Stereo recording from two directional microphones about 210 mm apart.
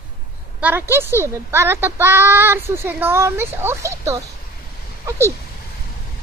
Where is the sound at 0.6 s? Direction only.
10° right (ahead or behind).